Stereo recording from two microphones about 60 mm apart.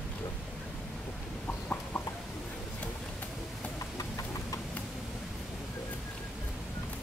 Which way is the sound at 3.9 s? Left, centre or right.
Left.